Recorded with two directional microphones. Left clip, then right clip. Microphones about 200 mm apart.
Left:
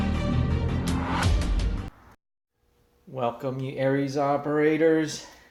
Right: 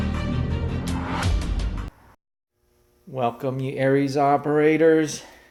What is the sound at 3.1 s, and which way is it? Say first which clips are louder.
Speech: right 4 dB; 45° right (ahead or behind).